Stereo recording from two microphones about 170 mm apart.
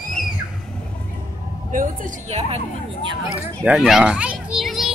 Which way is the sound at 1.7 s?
50° right (ahead or behind).